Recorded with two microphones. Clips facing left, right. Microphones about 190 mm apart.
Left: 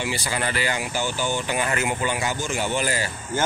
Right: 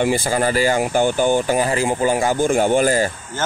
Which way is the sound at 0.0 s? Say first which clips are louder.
Right 9 dB; 50° right (ahead or behind).